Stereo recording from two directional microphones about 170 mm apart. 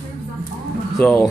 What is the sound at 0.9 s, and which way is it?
Speech, 5° left (ahead or behind).